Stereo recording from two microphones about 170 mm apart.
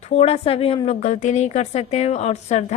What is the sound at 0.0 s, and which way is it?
A woman's voice, 40° left (ahead or behind).